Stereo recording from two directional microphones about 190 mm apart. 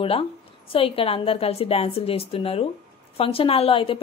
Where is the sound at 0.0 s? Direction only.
30° left (ahead or behind).